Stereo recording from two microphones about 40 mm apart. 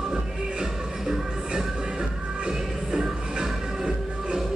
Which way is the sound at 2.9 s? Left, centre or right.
Centre.